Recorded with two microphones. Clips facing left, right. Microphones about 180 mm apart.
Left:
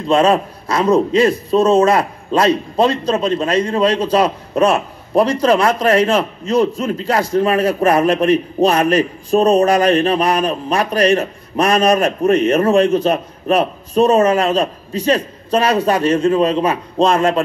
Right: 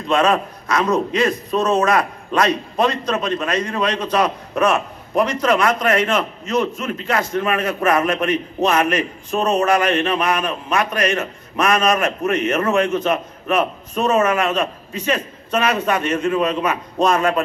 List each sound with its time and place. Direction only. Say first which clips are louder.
0.1 s a man's voice: left 4 dB; 30° left (ahead or behind)